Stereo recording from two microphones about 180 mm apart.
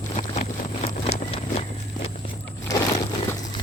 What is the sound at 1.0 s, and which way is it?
Horse, 35° left (ahead or behind).